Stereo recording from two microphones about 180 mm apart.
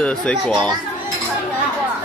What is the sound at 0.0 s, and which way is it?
Speech, 5° left (ahead or behind).